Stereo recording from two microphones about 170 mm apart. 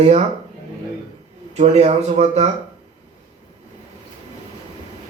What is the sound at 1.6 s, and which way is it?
Speech, 40° right (ahead or behind).